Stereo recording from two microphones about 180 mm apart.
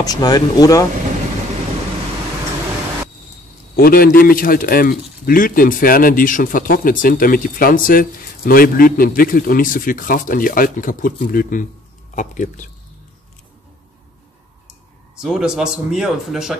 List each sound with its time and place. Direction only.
0.0 s speech: 20° left (ahead or behind)
3.7 s speech: 55° left (ahead or behind)
15.1 s speech: 5° right (ahead or behind)